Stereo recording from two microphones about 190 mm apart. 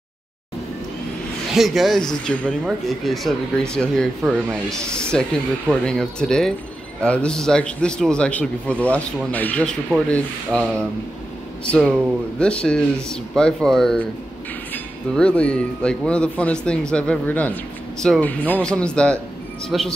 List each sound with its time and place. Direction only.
1.5 s a man's voice: centre (ahead or behind)